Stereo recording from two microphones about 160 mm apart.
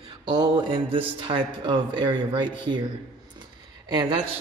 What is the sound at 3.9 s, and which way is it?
Speech, 30° right (ahead or behind).